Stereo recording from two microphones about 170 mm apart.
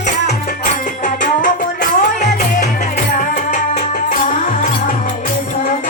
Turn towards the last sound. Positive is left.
turn(degrees=50)  # may be behind; listen again after turning